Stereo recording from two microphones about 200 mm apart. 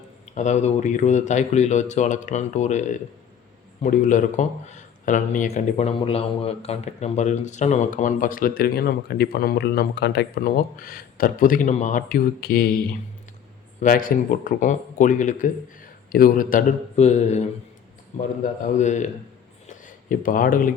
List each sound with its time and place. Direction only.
0.3 s speech: 35° left (ahead or behind)
13.8 s speech: 45° left (ahead or behind)
18.7 s speech: 35° left (ahead or behind)
19.6 s a sound: 40° left (ahead or behind)